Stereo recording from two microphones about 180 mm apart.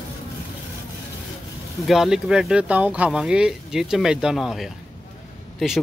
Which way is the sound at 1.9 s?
Centre (ahead or behind).